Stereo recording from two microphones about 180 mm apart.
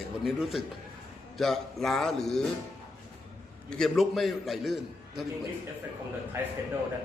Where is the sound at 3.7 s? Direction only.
Centre (ahead or behind).